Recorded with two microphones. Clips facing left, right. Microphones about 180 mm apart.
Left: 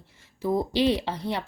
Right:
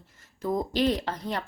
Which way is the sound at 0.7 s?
70° left (ahead or behind).